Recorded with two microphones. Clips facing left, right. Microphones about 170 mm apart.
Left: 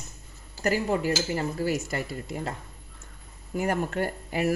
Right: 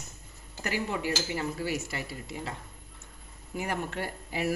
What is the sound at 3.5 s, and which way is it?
Speech, 45° left (ahead or behind).